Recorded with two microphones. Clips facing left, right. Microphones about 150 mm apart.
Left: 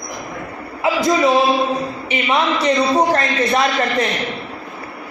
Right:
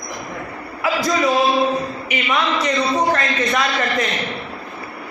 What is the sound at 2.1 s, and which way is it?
A man's voice, 30° left (ahead or behind).